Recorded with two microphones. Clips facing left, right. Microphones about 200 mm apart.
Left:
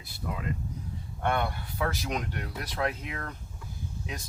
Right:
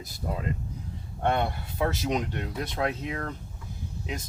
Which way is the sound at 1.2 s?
25° right (ahead or behind).